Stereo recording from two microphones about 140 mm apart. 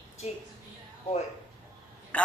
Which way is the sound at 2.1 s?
10° left (ahead or behind).